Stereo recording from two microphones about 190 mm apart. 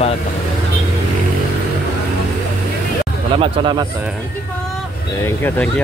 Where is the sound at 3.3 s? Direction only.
25° right (ahead or behind).